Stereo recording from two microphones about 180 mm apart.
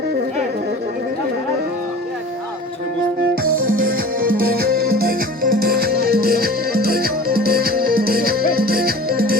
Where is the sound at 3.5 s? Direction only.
50° right (ahead or behind).